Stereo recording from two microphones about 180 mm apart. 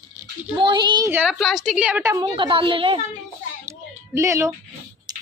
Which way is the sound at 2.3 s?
30° right (ahead or behind).